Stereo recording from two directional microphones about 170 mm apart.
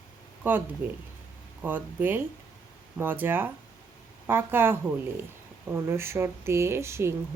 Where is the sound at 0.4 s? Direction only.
10° right (ahead or behind).